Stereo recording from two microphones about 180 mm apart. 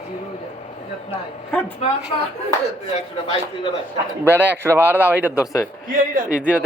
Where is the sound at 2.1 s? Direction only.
30° left (ahead or behind).